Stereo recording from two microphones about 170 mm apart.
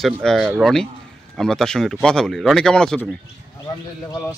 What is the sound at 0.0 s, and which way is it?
Speech, centre (ahead or behind).